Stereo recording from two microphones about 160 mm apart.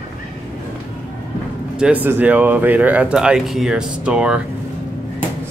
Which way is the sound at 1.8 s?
10° right (ahead or behind).